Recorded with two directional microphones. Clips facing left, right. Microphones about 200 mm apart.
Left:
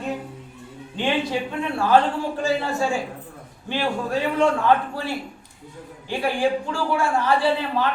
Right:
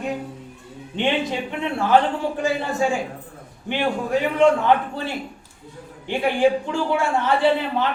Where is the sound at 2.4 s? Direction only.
15° right (ahead or behind).